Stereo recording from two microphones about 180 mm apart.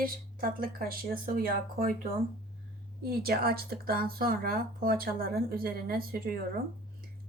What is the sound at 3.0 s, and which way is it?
Speech, 55° right (ahead or behind).